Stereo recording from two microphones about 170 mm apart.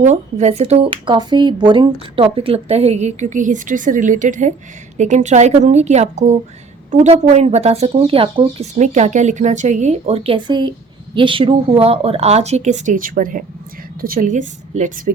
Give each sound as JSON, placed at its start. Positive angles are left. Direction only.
{"t": 0.0, "sound": "a woman's voice", "side_deg": -45}
{"t": 8.8, "sound": "a woman's voice", "side_deg": -45}